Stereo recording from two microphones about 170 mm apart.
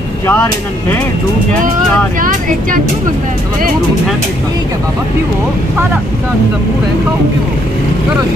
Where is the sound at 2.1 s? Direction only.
55° right (ahead or behind).